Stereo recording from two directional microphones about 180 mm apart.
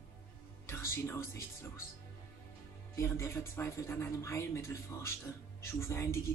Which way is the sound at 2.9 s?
15° left (ahead or behind).